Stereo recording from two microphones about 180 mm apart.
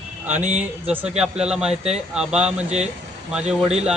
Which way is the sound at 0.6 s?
5° right (ahead or behind).